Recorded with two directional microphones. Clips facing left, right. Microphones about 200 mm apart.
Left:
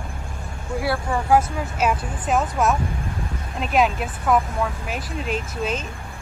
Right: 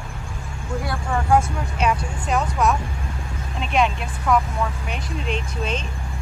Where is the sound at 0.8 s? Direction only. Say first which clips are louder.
Left 3 dB; 5° left (ahead or behind).